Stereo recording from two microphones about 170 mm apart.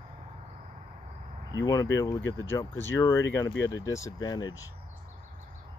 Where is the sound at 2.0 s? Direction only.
20° left (ahead or behind).